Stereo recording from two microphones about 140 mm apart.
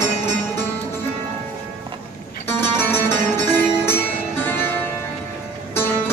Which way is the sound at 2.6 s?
15° left (ahead or behind).